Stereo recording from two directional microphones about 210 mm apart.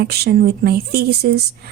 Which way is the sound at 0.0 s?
50° right (ahead or behind).